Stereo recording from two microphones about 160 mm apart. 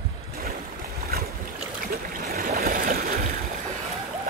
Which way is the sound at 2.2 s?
70° right (ahead or behind).